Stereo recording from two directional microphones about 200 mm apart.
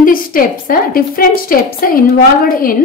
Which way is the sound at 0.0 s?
45° left (ahead or behind).